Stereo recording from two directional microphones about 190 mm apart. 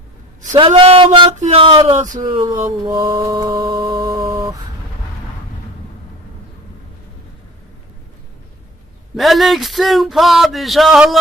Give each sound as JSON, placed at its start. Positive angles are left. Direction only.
{"t": 0.5, "sound": "mantra", "side_deg": -30}
{"t": 1.4, "sound": "speech", "side_deg": -30}
{"t": 2.2, "sound": "mantra", "side_deg": -20}
{"t": 9.1, "sound": "a sound", "side_deg": 0}